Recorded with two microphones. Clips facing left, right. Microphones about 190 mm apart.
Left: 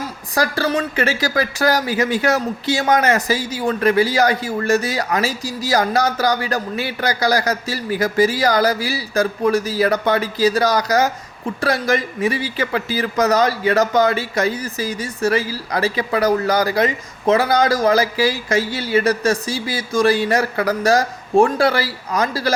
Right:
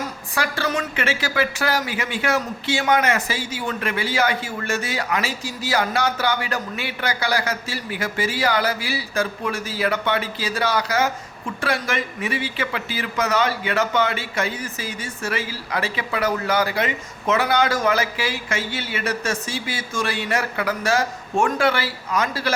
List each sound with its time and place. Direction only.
0.3 s speech: 35° left (ahead or behind)